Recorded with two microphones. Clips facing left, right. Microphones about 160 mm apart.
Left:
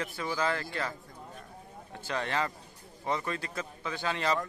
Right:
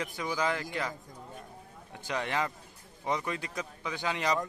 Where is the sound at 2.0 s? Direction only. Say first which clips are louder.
Even; 15° right (ahead or behind).